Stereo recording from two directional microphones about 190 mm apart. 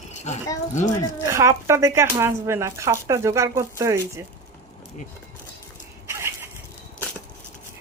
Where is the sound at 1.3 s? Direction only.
15° right (ahead or behind).